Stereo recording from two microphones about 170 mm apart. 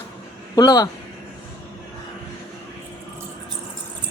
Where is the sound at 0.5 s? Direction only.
25° left (ahead or behind).